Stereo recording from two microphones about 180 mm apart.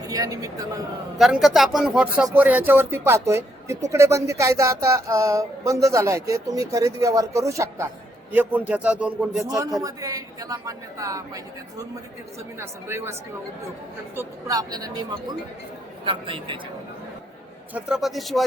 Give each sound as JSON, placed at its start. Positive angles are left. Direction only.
{"t": 0.1, "sound": "a man's voice", "side_deg": -20}
{"t": 1.2, "sound": "a sound", "side_deg": 0}
{"t": 9.6, "sound": "a man's voice", "side_deg": -20}
{"t": 12.5, "sound": "a sound", "side_deg": -15}
{"t": 14.2, "sound": "a man's voice", "side_deg": -20}
{"t": 17.7, "sound": "speech", "side_deg": -5}